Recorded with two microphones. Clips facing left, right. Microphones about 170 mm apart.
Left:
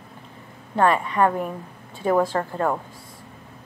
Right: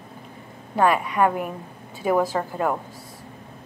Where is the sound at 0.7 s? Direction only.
5° right (ahead or behind).